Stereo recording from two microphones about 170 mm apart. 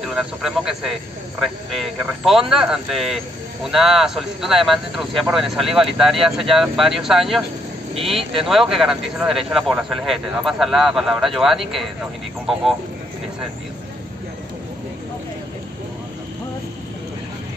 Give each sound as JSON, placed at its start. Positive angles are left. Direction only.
{"t": 0.0, "sound": "speech", "side_deg": 0}
{"t": 8.2, "sound": "speech", "side_deg": -35}
{"t": 8.5, "sound": "speech", "side_deg": 0}